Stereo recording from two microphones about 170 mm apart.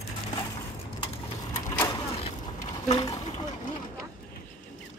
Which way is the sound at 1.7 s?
20° left (ahead or behind).